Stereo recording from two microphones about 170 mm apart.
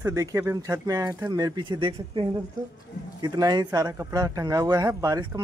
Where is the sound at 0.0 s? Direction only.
20° right (ahead or behind).